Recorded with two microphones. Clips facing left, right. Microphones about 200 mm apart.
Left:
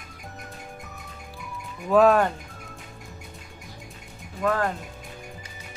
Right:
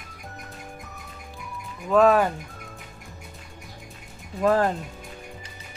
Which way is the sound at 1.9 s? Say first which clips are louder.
Even; centre (ahead or behind).